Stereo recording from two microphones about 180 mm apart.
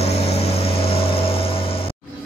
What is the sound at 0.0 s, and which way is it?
Vehicle, 35° left (ahead or behind).